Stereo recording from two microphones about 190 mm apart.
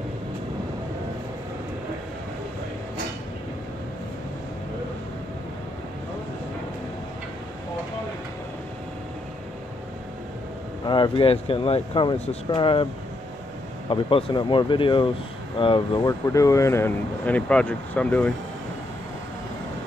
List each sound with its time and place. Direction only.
10.9 s speech: 25° left (ahead or behind)
13.8 s speech: 25° left (ahead or behind); by 18.3 s 5° left (ahead or behind)